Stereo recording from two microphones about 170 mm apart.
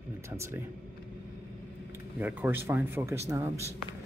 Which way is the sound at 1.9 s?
10° right (ahead or behind).